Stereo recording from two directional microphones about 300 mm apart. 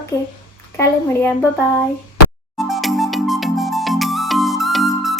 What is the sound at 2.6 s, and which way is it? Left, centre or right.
Music, centre.